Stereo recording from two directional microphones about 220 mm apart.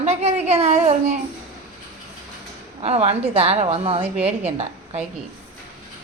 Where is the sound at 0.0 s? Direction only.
30° right (ahead or behind).